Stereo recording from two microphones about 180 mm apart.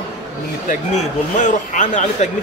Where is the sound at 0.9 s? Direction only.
40° left (ahead or behind).